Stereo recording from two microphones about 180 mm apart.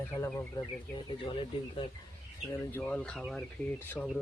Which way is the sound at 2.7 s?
5° left (ahead or behind).